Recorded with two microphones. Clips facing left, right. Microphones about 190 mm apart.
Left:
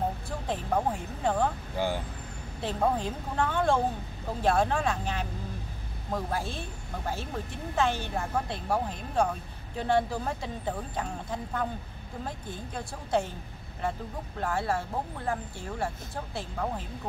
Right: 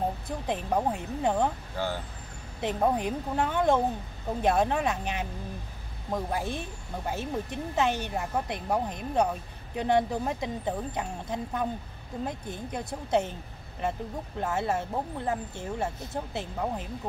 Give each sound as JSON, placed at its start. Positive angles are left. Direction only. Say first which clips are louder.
{"t": 0.5, "sound": "speech", "louder": "right 1 dB", "side_deg": -20}
{"t": 2.6, "sound": "speech", "louder": "right 2 dB", "side_deg": -20}